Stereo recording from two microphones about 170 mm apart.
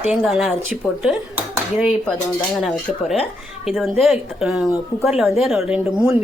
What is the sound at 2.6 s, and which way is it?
A woman's voice, centre (ahead or behind).